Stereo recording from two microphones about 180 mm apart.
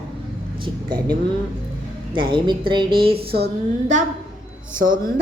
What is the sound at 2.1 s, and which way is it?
A woman's voice, 25° right (ahead or behind).